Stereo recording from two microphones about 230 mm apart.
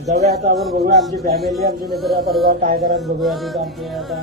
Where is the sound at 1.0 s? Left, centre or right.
Centre.